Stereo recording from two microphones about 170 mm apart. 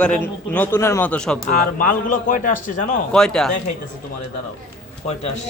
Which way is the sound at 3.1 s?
5° left (ahead or behind).